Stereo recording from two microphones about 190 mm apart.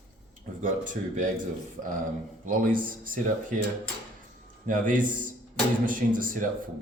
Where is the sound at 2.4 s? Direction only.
45° right (ahead or behind).